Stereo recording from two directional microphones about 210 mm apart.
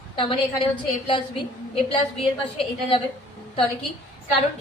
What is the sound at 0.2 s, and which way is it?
A woman's voice, 25° left (ahead or behind).